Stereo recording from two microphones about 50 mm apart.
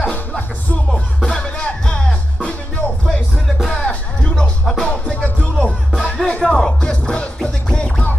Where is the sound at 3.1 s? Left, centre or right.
Centre.